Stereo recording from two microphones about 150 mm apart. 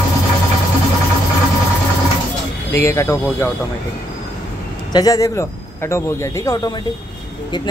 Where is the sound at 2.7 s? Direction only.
20° left (ahead or behind).